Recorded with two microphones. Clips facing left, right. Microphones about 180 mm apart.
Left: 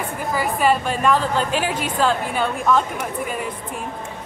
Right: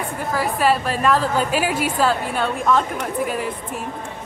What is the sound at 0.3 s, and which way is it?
A woman's voice, centre (ahead or behind).